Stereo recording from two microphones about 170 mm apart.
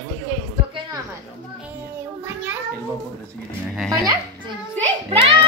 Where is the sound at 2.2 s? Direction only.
10° right (ahead or behind).